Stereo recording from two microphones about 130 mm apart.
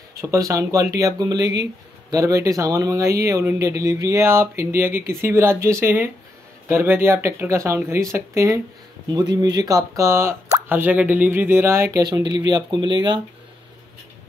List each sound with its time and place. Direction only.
0.2 s speech: 25° right (ahead or behind)
12.0 s speech: 35° right (ahead or behind)